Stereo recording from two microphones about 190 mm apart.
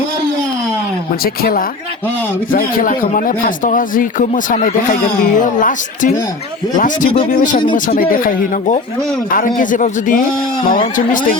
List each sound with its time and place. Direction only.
1.2 s speech: 50° left (ahead or behind)